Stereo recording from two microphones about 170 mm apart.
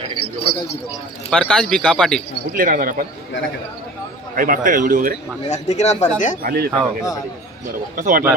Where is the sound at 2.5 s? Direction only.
55° right (ahead or behind).